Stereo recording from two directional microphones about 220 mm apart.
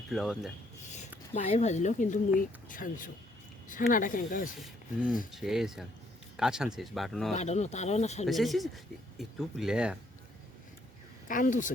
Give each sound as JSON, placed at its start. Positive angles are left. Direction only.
{"t": 0.1, "sound": "speech", "side_deg": 0}
{"t": 1.3, "sound": "speech", "side_deg": 30}
{"t": 4.6, "sound": "speech", "side_deg": -5}
{"t": 7.3, "sound": "speech", "side_deg": 30}
{"t": 8.3, "sound": "speech", "side_deg": 0}
{"t": 11.3, "sound": "speech", "side_deg": 35}